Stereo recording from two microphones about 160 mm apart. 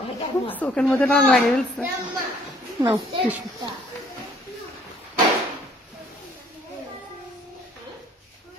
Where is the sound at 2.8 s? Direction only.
30° right (ahead or behind).